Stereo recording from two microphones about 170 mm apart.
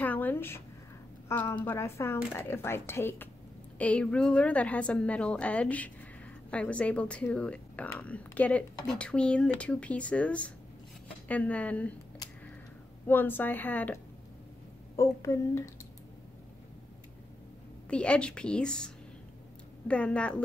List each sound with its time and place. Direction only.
0.0 s a sound: 10° left (ahead or behind)
1.3 s speech: 10° left (ahead or behind)
13.0 s speech: 10° left (ahead or behind)
15.0 s speech: 15° left (ahead or behind)
17.8 s a woman's voice: 5° left (ahead or behind)
19.9 s speech: 5° left (ahead or behind)